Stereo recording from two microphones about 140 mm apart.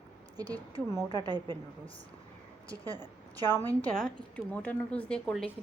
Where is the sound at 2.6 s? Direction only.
25° right (ahead or behind).